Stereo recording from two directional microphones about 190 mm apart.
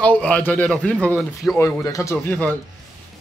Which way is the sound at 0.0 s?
5° left (ahead or behind).